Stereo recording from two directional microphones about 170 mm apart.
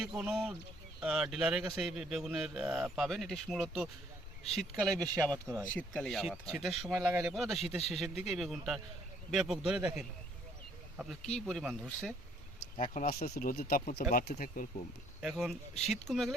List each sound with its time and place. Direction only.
0.0 s a man's voice: 5° right (ahead or behind)
4.7 s speech: 20° right (ahead or behind)
5.9 s a man's voice: 5° left (ahead or behind)
12.7 s speech: 45° left (ahead or behind)
13.2 s speech: 55° left (ahead or behind)
15.2 s a man's voice: centre (ahead or behind)